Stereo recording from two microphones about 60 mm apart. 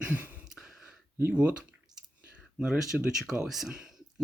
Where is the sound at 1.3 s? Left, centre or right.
Centre.